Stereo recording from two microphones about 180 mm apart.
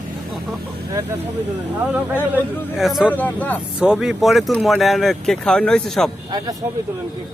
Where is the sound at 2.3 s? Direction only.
Centre (ahead or behind).